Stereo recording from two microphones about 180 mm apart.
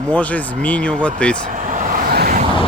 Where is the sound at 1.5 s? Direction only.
45° right (ahead or behind).